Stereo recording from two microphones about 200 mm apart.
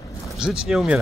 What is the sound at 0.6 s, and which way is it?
Speech, centre (ahead or behind).